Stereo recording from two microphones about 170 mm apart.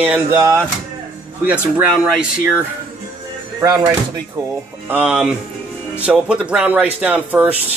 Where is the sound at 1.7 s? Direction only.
10° right (ahead or behind).